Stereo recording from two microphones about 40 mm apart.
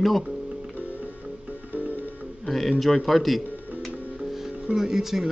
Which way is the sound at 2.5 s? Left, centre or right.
Centre.